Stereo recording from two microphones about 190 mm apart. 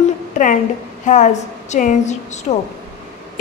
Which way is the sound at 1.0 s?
40° left (ahead or behind).